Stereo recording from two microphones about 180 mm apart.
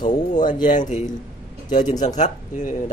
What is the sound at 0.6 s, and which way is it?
Speech, 45° left (ahead or behind).